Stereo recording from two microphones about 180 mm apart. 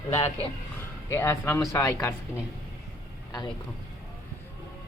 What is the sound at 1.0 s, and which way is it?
Speech, 15° left (ahead or behind).